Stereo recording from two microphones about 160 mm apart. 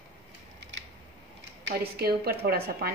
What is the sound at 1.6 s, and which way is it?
A woman's voice, 80° right.